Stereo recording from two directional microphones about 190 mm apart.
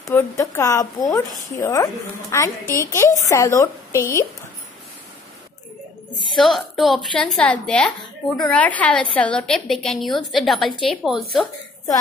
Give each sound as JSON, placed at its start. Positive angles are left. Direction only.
{"t": 0.1, "sound": "a woman's voice", "side_deg": 15}
{"t": 6.3, "sound": "a woman's voice", "side_deg": 0}